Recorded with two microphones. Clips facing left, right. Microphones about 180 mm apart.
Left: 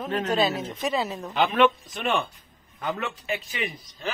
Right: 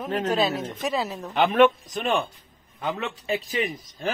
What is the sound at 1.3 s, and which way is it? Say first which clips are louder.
Speech: right 3 dB; 45° right (ahead or behind).